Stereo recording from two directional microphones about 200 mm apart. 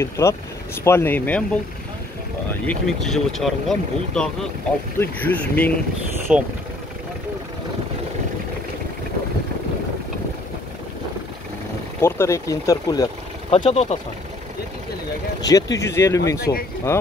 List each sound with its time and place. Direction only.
0.0 s speech: 15° left (ahead or behind)
2.6 s speech: 5° left (ahead or behind)
6.3 s speech: 5° right (ahead or behind)
12.0 s speech: 15° left (ahead or behind)
13.5 s speech: 30° left (ahead or behind)
15.4 s speech: 15° left (ahead or behind)